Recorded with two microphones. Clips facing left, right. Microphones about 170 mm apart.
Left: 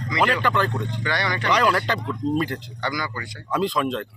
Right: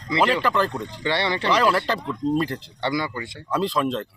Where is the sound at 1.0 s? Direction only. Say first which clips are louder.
Right 4 dB; 25° right (ahead or behind).